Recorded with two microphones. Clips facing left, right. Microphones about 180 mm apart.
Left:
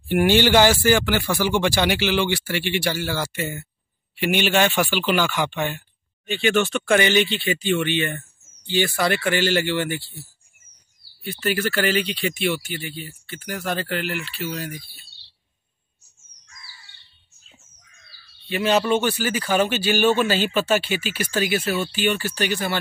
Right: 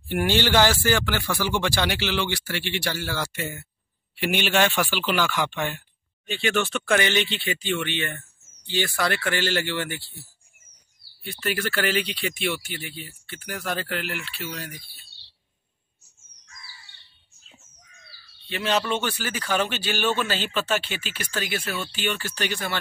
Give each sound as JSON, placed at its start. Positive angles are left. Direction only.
{"t": 0.1, "sound": "speech", "side_deg": 10}
{"t": 11.2, "sound": "speech", "side_deg": 5}
{"t": 18.5, "sound": "speech", "side_deg": 10}